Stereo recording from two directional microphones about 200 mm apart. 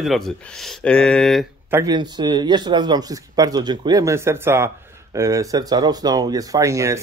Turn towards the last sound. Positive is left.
turn(degrees=-15)  # may be behind; listen again after turning